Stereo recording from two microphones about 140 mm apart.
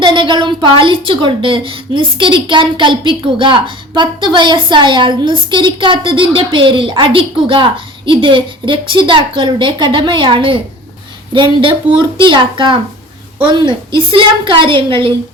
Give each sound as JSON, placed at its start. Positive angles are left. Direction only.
{"t": 0.0, "sound": "a woman's voice", "side_deg": -35}